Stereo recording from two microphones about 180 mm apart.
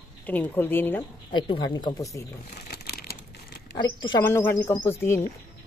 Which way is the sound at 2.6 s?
60° left (ahead or behind).